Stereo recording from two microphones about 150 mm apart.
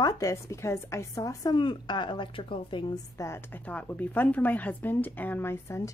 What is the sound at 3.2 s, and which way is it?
A woman's voice, 15° left (ahead or behind).